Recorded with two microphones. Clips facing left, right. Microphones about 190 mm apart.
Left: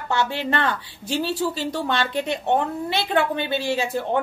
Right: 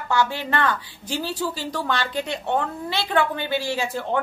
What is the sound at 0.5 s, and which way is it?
A woman's voice, 25° left (ahead or behind).